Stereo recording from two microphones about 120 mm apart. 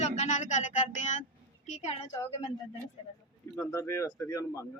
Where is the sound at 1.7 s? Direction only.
75° left (ahead or behind).